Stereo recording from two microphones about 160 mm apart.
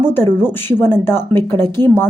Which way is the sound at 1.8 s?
25° right (ahead or behind).